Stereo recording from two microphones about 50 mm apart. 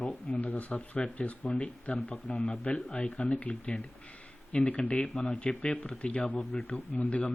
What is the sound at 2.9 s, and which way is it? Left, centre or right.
Speech, left.